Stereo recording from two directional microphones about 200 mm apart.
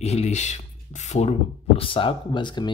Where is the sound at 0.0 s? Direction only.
35° left (ahead or behind).